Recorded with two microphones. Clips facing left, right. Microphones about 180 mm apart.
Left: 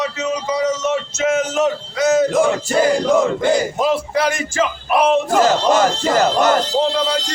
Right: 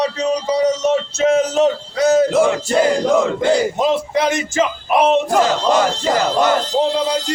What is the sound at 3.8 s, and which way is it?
Speech, 20° right (ahead or behind).